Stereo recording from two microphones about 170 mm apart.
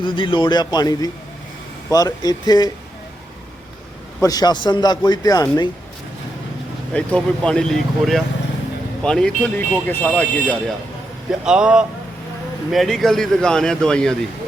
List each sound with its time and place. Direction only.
0.0 s a man's voice: 30° left (ahead or behind)
4.2 s a man's voice: 20° left (ahead or behind)
6.9 s speech: 5° left (ahead or behind)
11.3 s speech: 5° right (ahead or behind)